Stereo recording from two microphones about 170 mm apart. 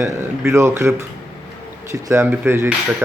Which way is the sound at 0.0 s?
15° right (ahead or behind).